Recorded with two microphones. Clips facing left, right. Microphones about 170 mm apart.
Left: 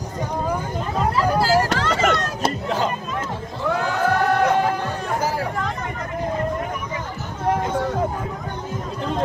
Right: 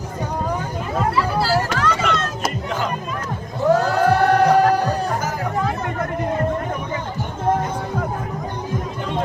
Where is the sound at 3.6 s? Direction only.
40° right (ahead or behind).